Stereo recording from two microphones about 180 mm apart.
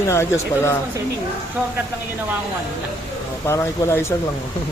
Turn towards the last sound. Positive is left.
turn(degrees=15)  # may be behind; listen again after turning